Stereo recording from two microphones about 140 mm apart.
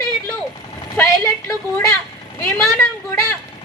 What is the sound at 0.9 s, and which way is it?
A woman's voice, 20° left (ahead or behind).